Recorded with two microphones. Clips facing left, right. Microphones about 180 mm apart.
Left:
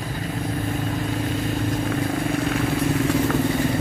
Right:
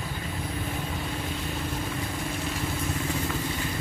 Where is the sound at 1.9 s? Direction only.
65° left (ahead or behind).